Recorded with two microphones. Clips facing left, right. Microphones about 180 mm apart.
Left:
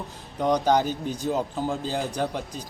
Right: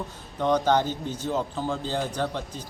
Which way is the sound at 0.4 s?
15° left (ahead or behind).